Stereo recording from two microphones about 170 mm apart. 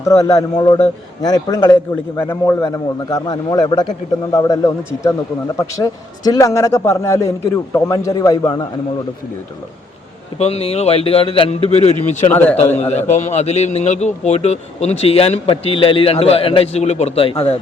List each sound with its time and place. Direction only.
0.0 s a man's voice: 20° left (ahead or behind)
10.3 s speech: 35° left (ahead or behind)
12.3 s a man's voice: 10° left (ahead or behind)
12.7 s speech: 40° left (ahead or behind)